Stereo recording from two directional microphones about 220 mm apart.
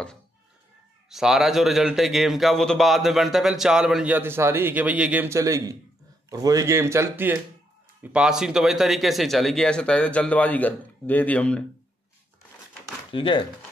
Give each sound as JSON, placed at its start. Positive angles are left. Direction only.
{"t": 1.1, "sound": "a man's voice", "side_deg": 0}
{"t": 13.1, "sound": "speech", "side_deg": 20}